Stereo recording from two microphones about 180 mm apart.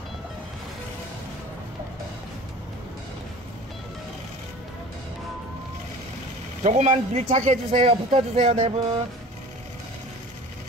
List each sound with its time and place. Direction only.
6.6 s speech: 40° right (ahead or behind)